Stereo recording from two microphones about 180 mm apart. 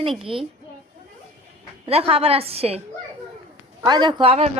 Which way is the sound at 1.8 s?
35° right (ahead or behind).